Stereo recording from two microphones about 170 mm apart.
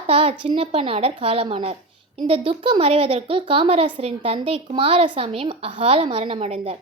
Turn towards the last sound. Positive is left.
turn(degrees=-35)  # may be behind; listen again after turning